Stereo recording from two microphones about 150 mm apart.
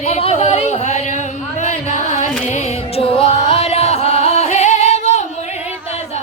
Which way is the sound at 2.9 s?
40° left (ahead or behind).